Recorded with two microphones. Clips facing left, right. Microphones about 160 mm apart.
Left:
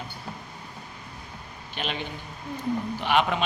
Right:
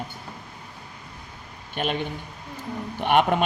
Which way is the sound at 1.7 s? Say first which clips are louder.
Right 6 dB; 50° right (ahead or behind).